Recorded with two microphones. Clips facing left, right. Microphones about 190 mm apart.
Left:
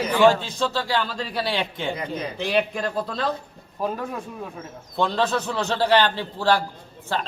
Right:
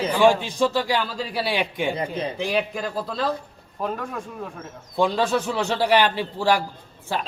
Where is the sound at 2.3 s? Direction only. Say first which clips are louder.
Left 3 dB; 5° right (ahead or behind).